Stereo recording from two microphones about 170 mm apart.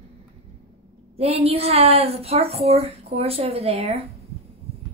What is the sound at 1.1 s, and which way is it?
A woman's voice, 35° right (ahead or behind).